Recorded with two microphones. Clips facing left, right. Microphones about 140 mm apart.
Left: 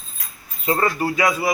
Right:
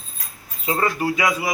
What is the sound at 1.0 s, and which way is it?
Speech, 35° left (ahead or behind).